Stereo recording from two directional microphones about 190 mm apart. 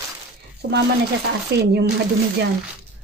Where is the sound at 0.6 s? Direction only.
50° right (ahead or behind).